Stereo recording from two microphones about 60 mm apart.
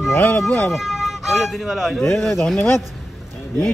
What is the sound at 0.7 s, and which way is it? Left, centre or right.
Speech, centre.